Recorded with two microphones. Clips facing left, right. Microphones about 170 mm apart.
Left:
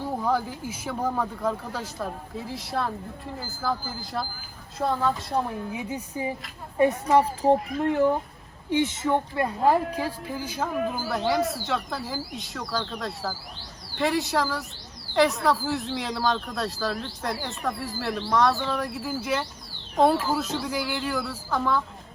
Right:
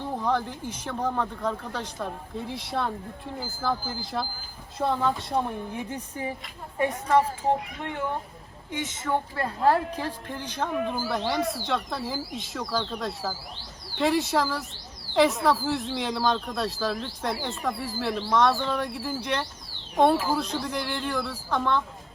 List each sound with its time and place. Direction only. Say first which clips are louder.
0.0 s a woman's voice: left 1 dB; 10° left (ahead or behind)
7.8 s speech: left 9 dB; 35° left (ahead or behind); by 21.8 s 5° left (ahead or behind)